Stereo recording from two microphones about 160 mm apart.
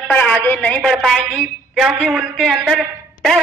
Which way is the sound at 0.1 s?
10° left (ahead or behind).